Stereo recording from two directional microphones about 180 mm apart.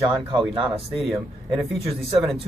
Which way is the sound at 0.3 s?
25° right (ahead or behind).